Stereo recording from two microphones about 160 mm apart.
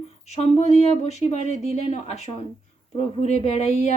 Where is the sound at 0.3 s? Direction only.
40° left (ahead or behind).